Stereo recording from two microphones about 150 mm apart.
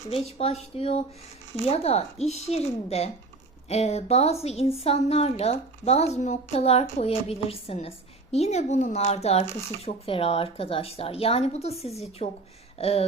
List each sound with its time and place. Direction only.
0.1 s a woman's voice: 45° left (ahead or behind)